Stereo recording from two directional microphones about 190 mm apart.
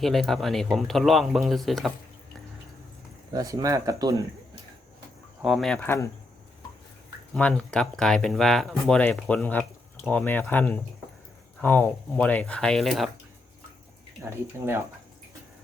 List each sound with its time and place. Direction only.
0.0 s speech: centre (ahead or behind)
3.3 s speech: 15° right (ahead or behind)
5.4 s speech: centre (ahead or behind)
7.3 s speech: 5° left (ahead or behind)
14.2 s speech: 15° right (ahead or behind)